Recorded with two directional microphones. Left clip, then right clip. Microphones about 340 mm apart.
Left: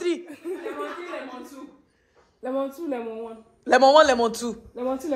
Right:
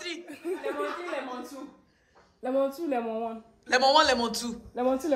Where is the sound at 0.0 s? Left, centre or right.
Centre.